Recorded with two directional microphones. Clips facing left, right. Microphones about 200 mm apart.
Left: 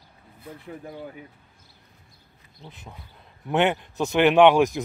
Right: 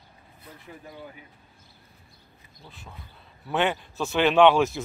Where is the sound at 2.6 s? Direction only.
20° left (ahead or behind).